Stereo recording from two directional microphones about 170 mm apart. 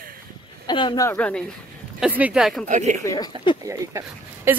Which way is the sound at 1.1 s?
10° left (ahead or behind).